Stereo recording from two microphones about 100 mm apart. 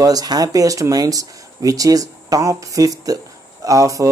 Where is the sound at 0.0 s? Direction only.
40° right (ahead or behind).